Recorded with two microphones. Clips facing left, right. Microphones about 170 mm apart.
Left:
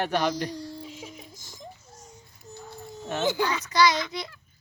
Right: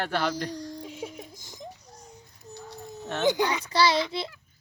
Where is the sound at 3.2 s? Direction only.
15° right (ahead or behind).